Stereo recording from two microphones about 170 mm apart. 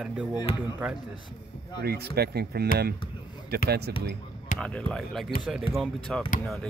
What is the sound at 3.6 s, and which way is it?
Speech, 70° right (ahead or behind).